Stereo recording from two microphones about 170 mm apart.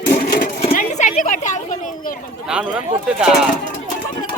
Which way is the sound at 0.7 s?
50° left (ahead or behind).